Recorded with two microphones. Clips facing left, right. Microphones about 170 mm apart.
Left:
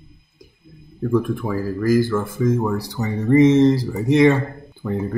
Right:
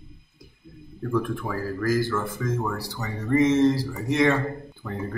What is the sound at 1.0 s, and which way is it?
Speech, 15° left (ahead or behind).